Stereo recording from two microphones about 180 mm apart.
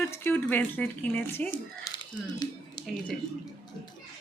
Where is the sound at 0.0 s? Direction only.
10° left (ahead or behind).